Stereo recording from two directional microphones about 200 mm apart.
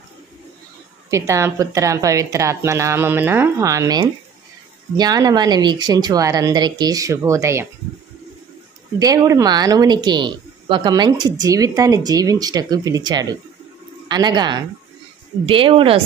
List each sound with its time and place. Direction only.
1.1 s a woman's voice: 15° right (ahead or behind)
9.0 s speech: 15° right (ahead or behind)